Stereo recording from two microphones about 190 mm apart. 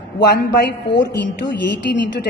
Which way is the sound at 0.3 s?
60° left (ahead or behind).